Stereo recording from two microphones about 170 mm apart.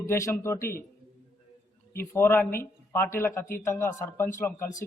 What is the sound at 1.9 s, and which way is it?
Speech, 15° left (ahead or behind).